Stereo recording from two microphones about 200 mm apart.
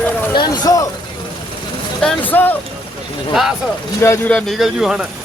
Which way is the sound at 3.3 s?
Centre (ahead or behind).